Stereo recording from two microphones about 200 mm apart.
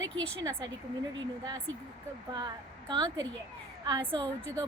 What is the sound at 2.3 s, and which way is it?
Speech, 20° right (ahead or behind).